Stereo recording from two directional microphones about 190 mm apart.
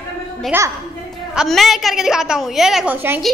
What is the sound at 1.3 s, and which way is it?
A woman's voice, centre (ahead or behind).